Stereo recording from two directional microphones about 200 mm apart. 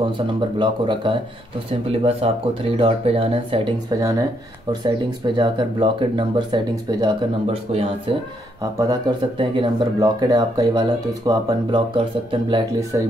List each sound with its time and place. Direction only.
0.0 s speech: 25° right (ahead or behind)
9.4 s speech: 20° right (ahead or behind)